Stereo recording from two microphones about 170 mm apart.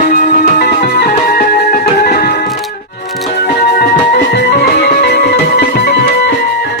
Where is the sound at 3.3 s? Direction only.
70° left (ahead or behind).